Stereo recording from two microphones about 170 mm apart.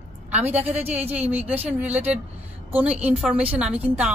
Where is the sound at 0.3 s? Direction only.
40° right (ahead or behind).